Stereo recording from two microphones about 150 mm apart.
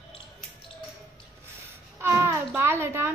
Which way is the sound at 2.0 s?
15° right (ahead or behind).